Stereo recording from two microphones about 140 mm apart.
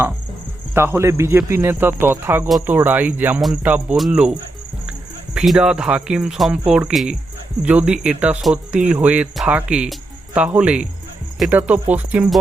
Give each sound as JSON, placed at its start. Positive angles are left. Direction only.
{"t": 0.7, "sound": "speech", "side_deg": -20}
{"t": 3.9, "sound": "cricket", "side_deg": -5}
{"t": 4.9, "sound": "speech", "side_deg": -5}